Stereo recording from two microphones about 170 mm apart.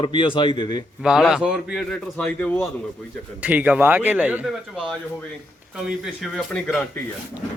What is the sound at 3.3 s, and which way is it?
A man's voice, 10° right (ahead or behind).